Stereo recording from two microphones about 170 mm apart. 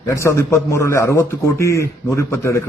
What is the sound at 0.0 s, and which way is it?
Speech, 15° left (ahead or behind).